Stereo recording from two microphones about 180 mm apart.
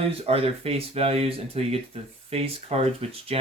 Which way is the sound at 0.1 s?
35° right (ahead or behind).